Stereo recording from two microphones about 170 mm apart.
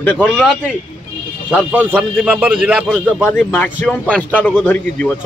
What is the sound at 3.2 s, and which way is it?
Speech, 10° left (ahead or behind).